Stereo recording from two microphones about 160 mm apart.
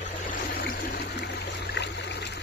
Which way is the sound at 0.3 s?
65° left (ahead or behind).